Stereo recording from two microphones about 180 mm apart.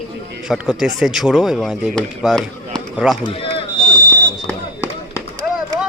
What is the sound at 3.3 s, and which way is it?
Smoke detector, 30° left (ahead or behind).